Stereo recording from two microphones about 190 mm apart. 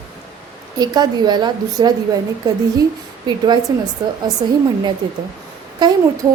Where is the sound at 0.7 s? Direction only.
20° right (ahead or behind).